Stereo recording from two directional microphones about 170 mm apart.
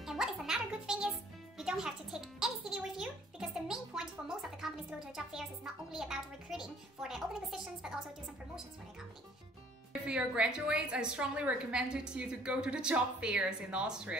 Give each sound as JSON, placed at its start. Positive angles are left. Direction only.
{"t": 0.0, "sound": "music", "side_deg": 0}
{"t": 10.0, "sound": "a woman's voice", "side_deg": -5}